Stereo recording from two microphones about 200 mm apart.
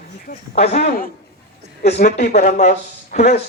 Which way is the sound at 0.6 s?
35° left (ahead or behind).